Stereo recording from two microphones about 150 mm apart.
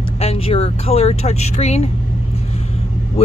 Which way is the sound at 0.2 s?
40° left (ahead or behind).